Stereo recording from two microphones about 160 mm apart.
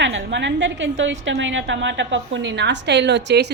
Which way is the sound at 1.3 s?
90° right.